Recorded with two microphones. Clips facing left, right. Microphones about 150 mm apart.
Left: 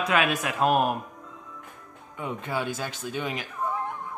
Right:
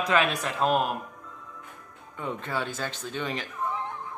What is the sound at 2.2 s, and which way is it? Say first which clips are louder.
Speech: left 1 dB; 10° left (ahead or behind).